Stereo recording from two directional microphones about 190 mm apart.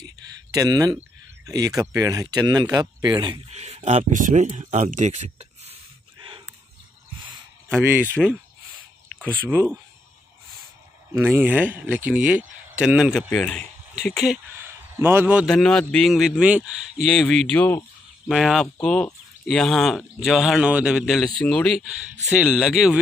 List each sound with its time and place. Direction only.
0.0 s speech: 20° right (ahead or behind)
6.1 s a sound: 25° right (ahead or behind)
7.6 s speech: 10° right (ahead or behind)
9.2 s speech: 10° left (ahead or behind)
11.1 s a man's voice: 10° right (ahead or behind)
14.5 s a man's voice: 10° right (ahead or behind); by 17.8 s 10° left (ahead or behind)
18.3 s a man's voice: centre (ahead or behind)